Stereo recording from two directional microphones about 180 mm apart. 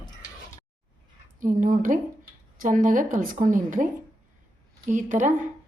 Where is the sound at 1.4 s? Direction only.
45° right (ahead or behind).